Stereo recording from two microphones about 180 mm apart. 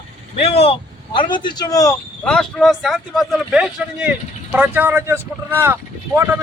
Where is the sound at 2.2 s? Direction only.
5° left (ahead or behind); by 6.4 s 15° right (ahead or behind).